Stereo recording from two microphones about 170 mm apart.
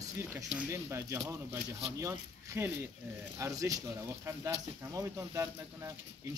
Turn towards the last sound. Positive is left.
turn(degrees=-20)  # may be behind; listen again after turning